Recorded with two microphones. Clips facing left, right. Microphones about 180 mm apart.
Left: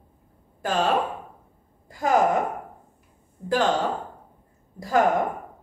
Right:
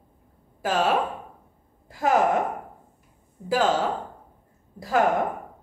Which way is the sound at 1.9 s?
5° right (ahead or behind).